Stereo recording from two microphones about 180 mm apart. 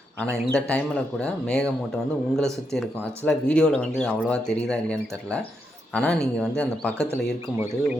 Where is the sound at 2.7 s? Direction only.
5° left (ahead or behind).